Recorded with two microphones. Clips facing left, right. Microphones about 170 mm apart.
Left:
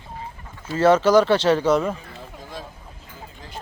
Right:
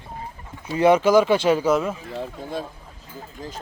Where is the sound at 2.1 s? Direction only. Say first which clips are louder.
Right 8 dB; 55° right (ahead or behind).